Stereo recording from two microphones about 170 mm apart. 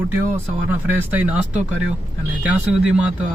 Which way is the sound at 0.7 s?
10° right (ahead or behind).